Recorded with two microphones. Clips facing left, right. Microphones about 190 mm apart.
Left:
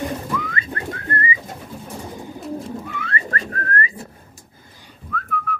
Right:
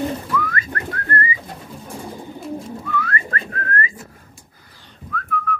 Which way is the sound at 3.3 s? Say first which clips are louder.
Even; 40° left (ahead or behind).